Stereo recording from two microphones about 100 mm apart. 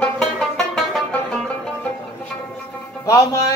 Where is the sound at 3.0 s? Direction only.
30° left (ahead or behind).